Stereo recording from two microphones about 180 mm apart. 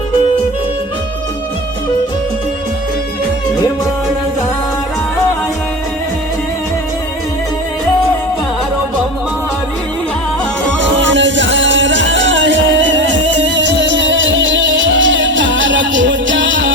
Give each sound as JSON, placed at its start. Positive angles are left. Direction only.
{"t": 10.8, "sound": "music", "side_deg": -90}